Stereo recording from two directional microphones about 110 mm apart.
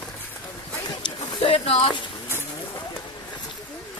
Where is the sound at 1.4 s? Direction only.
60° left (ahead or behind).